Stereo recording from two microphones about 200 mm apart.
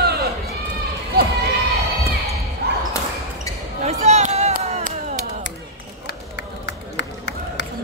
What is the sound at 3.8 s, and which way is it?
Basketball bounce, 35° right (ahead or behind).